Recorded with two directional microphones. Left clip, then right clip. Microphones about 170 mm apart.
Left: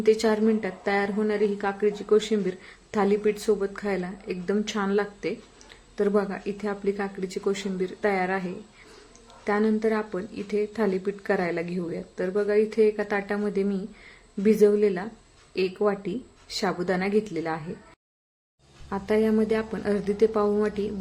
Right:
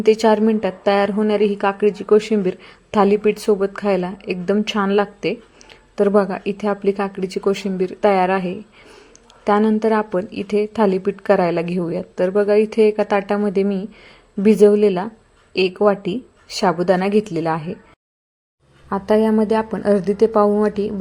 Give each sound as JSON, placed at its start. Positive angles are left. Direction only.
{"t": 0.0, "sound": "a woman's voice", "side_deg": -20}
{"t": 18.9, "sound": "a woman's voice", "side_deg": -25}